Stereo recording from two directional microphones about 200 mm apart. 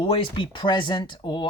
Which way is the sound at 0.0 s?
25° left (ahead or behind).